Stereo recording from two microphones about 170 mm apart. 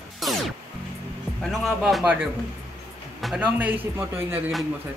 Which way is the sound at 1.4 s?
Centre (ahead or behind).